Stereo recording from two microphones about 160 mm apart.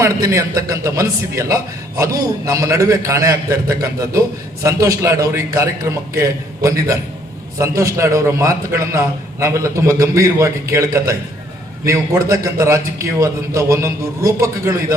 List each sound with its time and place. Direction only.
0.0 s a man's voice: 20° right (ahead or behind)